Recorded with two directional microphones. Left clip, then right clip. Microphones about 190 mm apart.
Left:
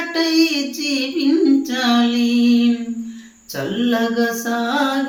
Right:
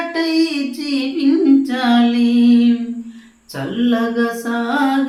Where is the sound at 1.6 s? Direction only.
5° right (ahead or behind).